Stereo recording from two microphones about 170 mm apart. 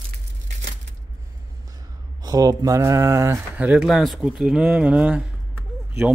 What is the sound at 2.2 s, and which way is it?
Speech, 20° right (ahead or behind).